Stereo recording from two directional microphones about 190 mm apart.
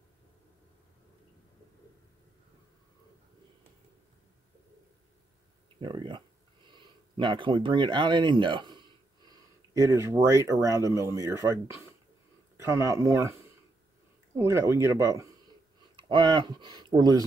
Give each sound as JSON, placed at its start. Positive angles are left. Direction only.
{"t": 5.8, "sound": "speech", "side_deg": -25}
{"t": 14.4, "sound": "speech", "side_deg": -15}